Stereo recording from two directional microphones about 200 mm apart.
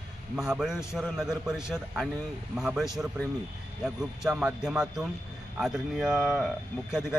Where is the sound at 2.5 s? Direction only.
Centre (ahead or behind).